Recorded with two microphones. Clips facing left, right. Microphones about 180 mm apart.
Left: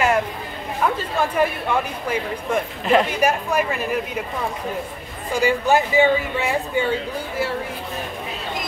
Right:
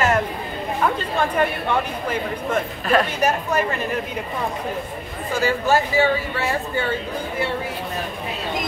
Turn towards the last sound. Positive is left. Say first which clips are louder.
# even
turn(degrees=10)  # may be behind; listen again after turning